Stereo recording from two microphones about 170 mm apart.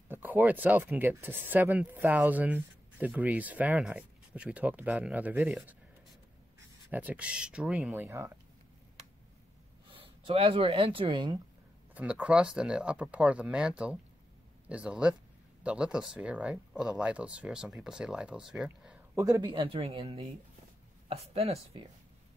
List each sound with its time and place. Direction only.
0.1 s speech: 10° right (ahead or behind)
6.9 s speech: 10° right (ahead or behind)
9.9 s speech: 30° right (ahead or behind)
11.9 s speech: 10° right (ahead or behind)
19.1 s speech: 20° right (ahead or behind); by 21.8 s 35° right (ahead or behind)